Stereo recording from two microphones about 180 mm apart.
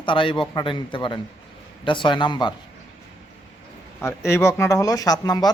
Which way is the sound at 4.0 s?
15° left (ahead or behind).